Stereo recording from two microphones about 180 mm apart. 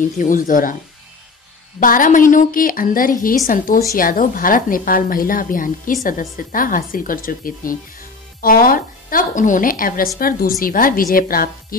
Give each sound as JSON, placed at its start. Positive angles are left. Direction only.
{"t": 0.2, "sound": "a woman's voice", "side_deg": 50}
{"t": 1.8, "sound": "a woman's voice", "side_deg": 50}